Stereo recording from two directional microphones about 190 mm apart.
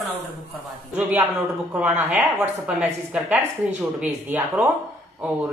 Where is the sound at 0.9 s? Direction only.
10° right (ahead or behind).